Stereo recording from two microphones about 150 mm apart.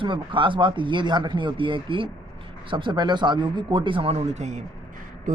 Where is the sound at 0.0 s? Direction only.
35° right (ahead or behind).